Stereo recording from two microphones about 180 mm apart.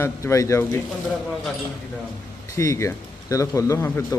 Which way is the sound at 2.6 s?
15° left (ahead or behind).